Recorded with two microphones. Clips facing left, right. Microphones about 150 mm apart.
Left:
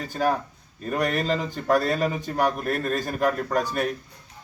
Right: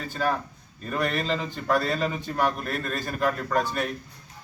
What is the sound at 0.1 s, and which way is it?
Speech, 45° left (ahead or behind).